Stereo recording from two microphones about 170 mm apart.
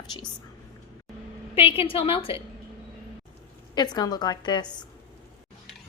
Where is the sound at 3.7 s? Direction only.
25° left (ahead or behind).